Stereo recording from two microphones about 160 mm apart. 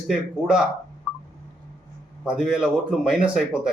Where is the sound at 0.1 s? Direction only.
5° right (ahead or behind).